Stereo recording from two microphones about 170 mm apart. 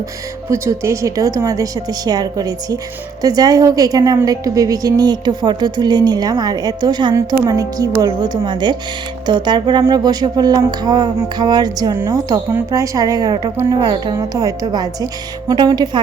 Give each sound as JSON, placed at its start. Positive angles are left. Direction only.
{"t": 0.5, "sound": "a woman's voice", "side_deg": -15}